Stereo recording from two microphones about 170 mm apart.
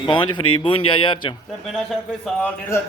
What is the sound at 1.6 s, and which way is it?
Speech, centre (ahead or behind).